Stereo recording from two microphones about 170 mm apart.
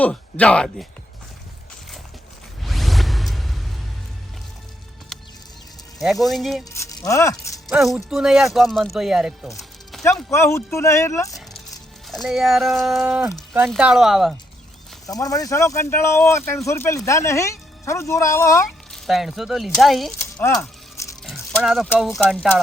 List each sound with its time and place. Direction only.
0.0 s speech: 5° left (ahead or behind)
2.6 s music: centre (ahead or behind)
5.1 s music: centre (ahead or behind)
6.0 s speech: centre (ahead or behind)
6.7 s speech: 15° left (ahead or behind)
7.7 s speech: 5° right (ahead or behind)
9.6 s music: centre (ahead or behind)
10.3 s speech: 15° left (ahead or behind)
12.0 s speech: centre (ahead or behind)
15.0 s speech: 20° left (ahead or behind)
18.9 s speech: centre (ahead or behind)
20.4 s a sound: 15° left (ahead or behind)
21.2 s a sound: centre (ahead or behind)